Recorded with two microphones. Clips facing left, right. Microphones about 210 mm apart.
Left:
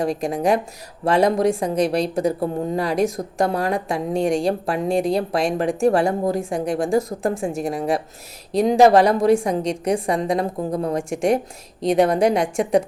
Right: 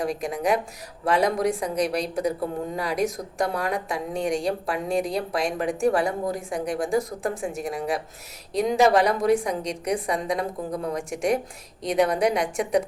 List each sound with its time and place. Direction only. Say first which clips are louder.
0.0 s a woman's voice: left 5 dB; 30° left (ahead or behind)